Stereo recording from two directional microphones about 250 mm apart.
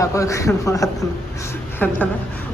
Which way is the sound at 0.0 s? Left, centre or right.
Centre.